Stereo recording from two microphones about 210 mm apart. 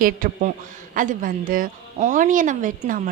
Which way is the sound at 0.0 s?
40° right (ahead or behind).